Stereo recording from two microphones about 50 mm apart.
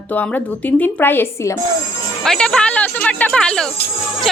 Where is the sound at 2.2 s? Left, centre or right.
Centre.